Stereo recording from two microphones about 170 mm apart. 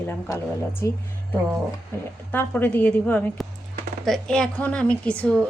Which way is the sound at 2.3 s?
10° left (ahead or behind).